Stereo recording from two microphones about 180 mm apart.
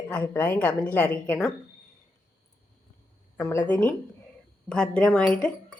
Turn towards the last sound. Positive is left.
turn(degrees=5)  # may be behind; listen again after turning